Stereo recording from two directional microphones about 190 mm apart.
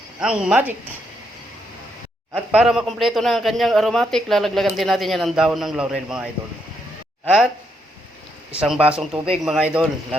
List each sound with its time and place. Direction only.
0.2 s speech: 5° right (ahead or behind)
2.3 s speech: 5° right (ahead or behind)
8.5 s speech: centre (ahead or behind)